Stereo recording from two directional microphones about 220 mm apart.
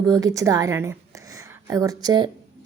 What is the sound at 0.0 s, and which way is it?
A woman's voice, 15° right (ahead or behind).